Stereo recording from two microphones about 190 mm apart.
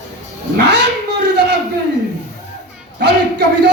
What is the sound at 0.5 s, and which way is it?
Cat, 60° right (ahead or behind).